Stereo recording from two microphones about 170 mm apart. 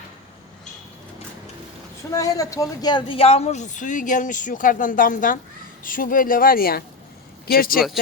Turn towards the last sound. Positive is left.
turn(degrees=60)  # may be behind; listen again after turning